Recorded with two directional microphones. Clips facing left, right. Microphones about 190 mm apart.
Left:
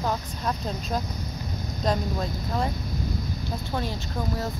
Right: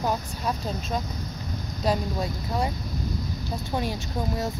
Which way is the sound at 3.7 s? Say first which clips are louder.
Right 2 dB; 15° right (ahead or behind).